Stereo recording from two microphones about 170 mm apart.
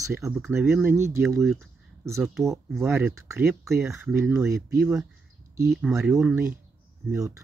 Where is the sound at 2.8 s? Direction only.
15° right (ahead or behind).